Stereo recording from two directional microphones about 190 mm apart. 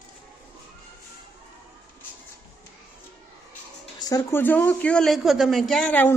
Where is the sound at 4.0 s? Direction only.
15° left (ahead or behind).